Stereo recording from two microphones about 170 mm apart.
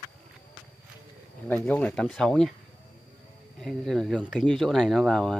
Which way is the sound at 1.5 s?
10° left (ahead or behind).